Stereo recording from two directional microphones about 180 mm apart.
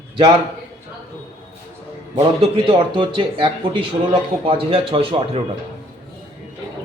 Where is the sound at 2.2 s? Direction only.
30° right (ahead or behind).